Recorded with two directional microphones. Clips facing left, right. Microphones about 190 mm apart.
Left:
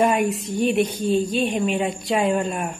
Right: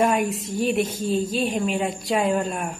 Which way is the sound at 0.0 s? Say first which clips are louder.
Left 2 dB; centre (ahead or behind).